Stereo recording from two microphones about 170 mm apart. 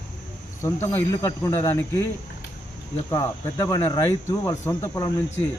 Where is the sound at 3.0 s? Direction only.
20° left (ahead or behind).